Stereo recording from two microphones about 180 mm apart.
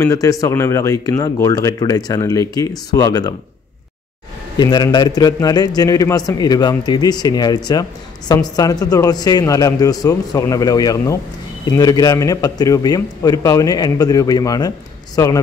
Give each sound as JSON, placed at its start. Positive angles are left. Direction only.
{"t": 0.0, "sound": "speech", "side_deg": 15}
{"t": 4.6, "sound": "speech", "side_deg": 25}